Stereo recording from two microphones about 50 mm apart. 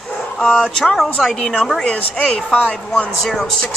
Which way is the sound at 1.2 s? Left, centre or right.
Centre.